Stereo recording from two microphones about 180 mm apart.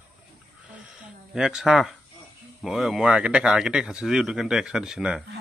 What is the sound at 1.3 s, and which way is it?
Speech, 5° right (ahead or behind).